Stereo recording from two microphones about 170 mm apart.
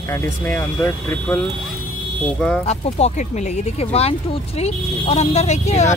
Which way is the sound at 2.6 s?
40° left (ahead or behind).